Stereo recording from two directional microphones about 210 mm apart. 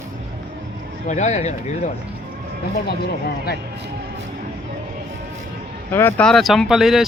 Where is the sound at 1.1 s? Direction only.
35° left (ahead or behind).